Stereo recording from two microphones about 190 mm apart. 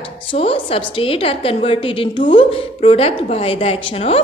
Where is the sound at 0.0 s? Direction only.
30° left (ahead or behind).